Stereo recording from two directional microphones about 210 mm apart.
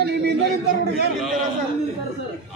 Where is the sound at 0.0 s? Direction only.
50° right (ahead or behind).